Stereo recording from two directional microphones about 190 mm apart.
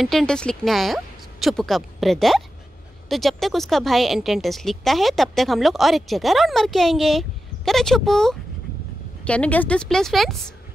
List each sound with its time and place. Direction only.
0.0 s a woman's voice: centre (ahead or behind)